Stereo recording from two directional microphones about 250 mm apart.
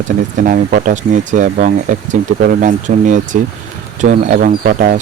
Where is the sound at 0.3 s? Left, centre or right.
Right.